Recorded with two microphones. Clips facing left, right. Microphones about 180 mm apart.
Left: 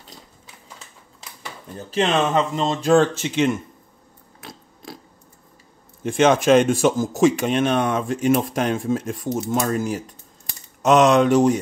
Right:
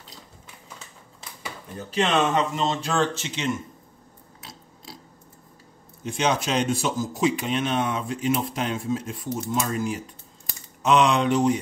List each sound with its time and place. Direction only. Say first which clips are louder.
2.0 s speech: left 3 dB; 35° left (ahead or behind); by 3.5 s 55° left (ahead or behind)
4.4 s a sound: left 6 dB; 55° left (ahead or behind)
6.0 s speech: left 9 dB; 50° left (ahead or behind)